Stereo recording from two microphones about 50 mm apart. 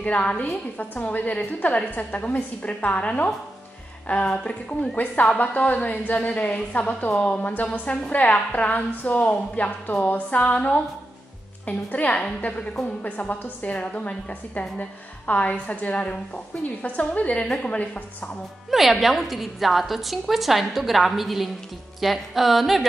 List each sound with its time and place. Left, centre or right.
0.0 s a woman's voice: left
4.9 s a woman's voice: left
18.7 s a woman's voice: centre